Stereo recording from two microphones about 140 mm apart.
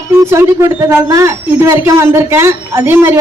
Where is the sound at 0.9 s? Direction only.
20° right (ahead or behind).